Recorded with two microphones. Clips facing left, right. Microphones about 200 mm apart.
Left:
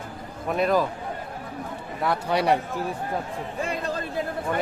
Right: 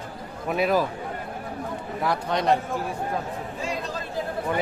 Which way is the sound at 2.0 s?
5° left (ahead or behind).